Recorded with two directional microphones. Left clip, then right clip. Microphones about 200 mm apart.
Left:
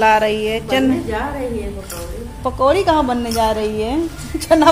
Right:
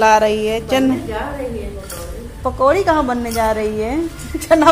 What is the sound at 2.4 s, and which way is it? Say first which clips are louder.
A woman's voice: right 1 dB; 5° right (ahead or behind).